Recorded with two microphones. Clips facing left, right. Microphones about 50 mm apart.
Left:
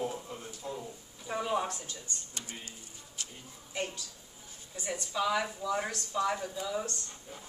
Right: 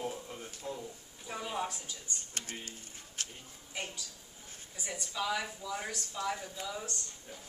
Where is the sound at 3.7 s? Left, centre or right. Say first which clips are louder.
Left 5 dB; centre.